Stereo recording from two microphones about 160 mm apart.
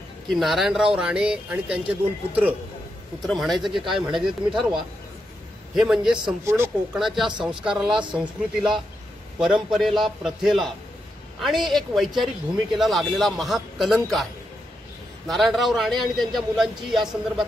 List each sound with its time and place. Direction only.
0.3 s speech: centre (ahead or behind)
6.4 s speech: 15° right (ahead or behind)
6.9 s speech: centre (ahead or behind)
15.2 s speech: centre (ahead or behind)